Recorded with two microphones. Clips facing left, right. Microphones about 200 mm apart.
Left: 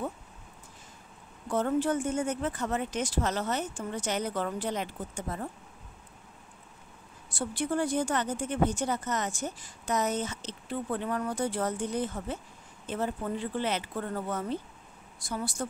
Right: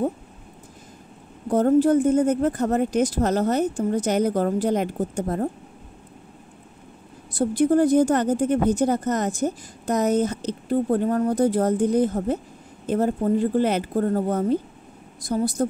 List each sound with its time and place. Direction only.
1.5 s speech: 40° right (ahead or behind)
7.3 s speech: 40° right (ahead or behind)